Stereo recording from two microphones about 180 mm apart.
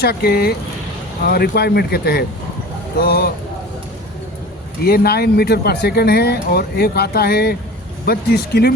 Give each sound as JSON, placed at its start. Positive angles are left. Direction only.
{"t": 0.0, "sound": "speech", "side_deg": 60}
{"t": 4.8, "sound": "speech", "side_deg": 60}